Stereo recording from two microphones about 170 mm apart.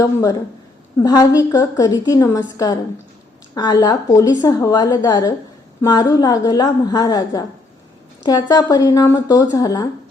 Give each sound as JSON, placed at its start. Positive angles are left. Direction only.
{"t": 0.0, "sound": "a woman's voice", "side_deg": 20}